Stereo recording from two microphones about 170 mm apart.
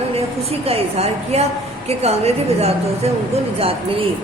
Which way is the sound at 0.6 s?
35° right (ahead or behind).